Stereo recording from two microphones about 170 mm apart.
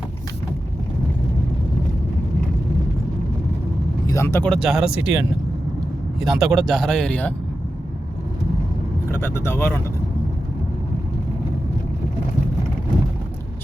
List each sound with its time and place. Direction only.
4.0 s vehicle: 20° left (ahead or behind)
4.4 s speech: centre (ahead or behind)
6.1 s speech: 5° right (ahead or behind)
9.0 s speech: 15° left (ahead or behind)